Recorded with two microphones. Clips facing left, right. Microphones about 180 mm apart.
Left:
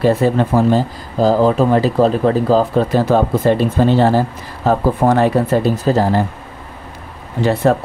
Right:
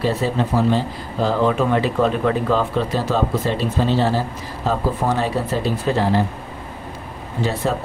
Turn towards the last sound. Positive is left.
turn(degrees=60)  # may be behind; listen again after turning